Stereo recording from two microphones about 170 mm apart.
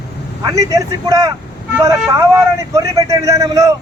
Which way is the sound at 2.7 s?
20° right (ahead or behind).